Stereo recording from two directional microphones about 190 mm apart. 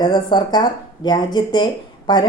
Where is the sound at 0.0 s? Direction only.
20° left (ahead or behind).